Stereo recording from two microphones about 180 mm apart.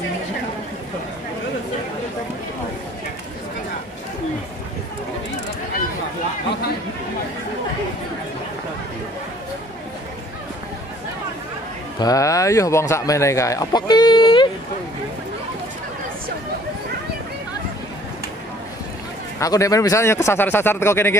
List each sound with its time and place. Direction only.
12.0 s speech: 20° left (ahead or behind)
19.4 s speech: 20° left (ahead or behind)